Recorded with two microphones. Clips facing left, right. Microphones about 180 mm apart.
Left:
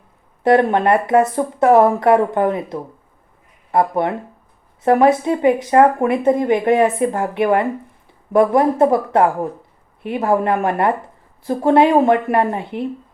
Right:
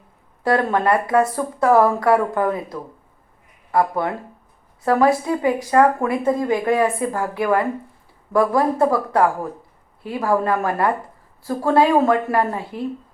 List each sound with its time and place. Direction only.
0.4 s speech: 20° left (ahead or behind)